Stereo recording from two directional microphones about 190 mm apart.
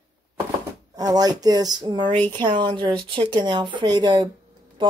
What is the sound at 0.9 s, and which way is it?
Speech, 20° right (ahead or behind).